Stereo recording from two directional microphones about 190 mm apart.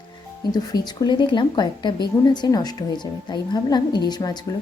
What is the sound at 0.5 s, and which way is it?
Speech, 20° left (ahead or behind).